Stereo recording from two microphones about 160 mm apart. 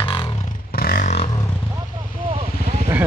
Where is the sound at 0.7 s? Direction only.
70° left (ahead or behind).